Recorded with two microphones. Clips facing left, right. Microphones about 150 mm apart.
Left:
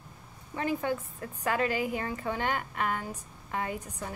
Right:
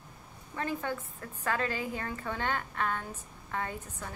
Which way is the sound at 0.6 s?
15° left (ahead or behind).